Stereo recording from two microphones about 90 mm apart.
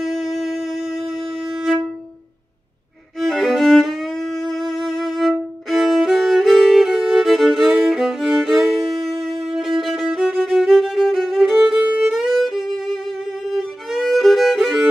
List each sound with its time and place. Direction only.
0.0 s wind instrument: centre (ahead or behind)
3.2 s music: centre (ahead or behind)
13.5 s violin: centre (ahead or behind)